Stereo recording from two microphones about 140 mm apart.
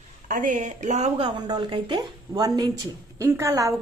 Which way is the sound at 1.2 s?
35° right (ahead or behind).